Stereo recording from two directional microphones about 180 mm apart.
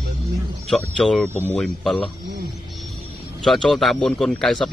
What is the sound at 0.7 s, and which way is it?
Speech, 5° left (ahead or behind).